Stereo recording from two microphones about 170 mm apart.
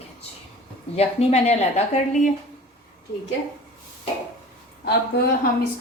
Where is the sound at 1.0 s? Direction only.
40° left (ahead or behind).